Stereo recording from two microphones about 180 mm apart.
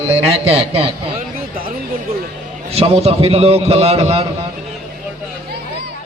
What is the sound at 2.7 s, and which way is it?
A man's voice, 35° right (ahead or behind).